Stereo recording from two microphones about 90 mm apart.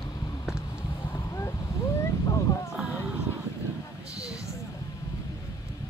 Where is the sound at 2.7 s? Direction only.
10° right (ahead or behind).